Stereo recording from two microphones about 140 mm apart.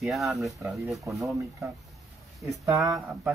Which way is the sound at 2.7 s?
25° right (ahead or behind).